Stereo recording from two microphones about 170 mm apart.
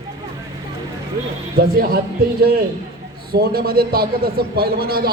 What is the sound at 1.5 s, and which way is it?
Speech, 60° right (ahead or behind).